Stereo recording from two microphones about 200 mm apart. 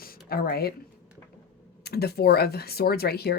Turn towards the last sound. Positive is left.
turn(degrees=50)  # may be behind; listen again after turning